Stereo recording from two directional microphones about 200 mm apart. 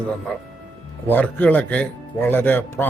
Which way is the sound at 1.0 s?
10° left (ahead or behind).